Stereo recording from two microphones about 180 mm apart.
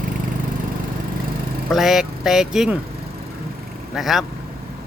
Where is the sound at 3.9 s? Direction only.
Centre (ahead or behind).